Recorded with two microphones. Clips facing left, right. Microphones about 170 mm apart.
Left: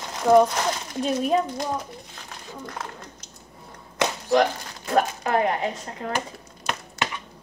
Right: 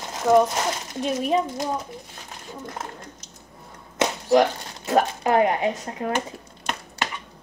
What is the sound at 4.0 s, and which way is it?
Speech, 20° right (ahead or behind).